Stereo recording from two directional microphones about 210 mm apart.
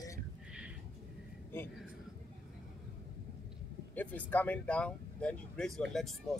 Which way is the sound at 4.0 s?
5° left (ahead or behind).